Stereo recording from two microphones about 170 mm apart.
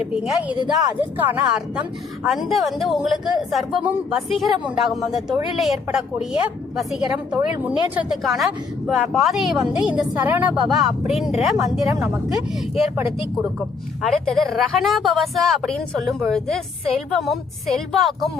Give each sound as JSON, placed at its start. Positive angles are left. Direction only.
{"t": 0.1, "sound": "a woman's voice", "side_deg": -5}
{"t": 14.0, "sound": "a woman's voice", "side_deg": 0}